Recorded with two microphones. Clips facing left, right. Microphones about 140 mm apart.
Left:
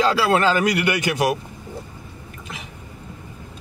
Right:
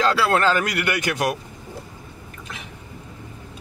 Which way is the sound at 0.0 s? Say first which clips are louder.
Left 1 dB; 5° left (ahead or behind).